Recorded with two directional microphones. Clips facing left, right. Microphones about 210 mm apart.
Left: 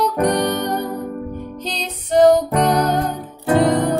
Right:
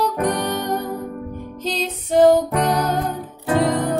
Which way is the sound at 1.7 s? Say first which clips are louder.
Right 1 dB; 5° right (ahead or behind).